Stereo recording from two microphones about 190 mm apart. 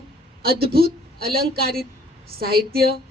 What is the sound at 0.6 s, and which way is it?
A woman's voice, 55° right (ahead or behind).